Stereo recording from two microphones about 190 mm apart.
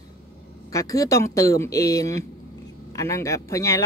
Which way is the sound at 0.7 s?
15° left (ahead or behind).